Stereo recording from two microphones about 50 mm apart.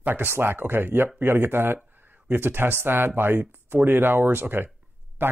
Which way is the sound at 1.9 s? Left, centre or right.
Right.